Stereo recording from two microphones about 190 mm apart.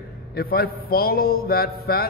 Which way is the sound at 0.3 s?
55° left (ahead or behind).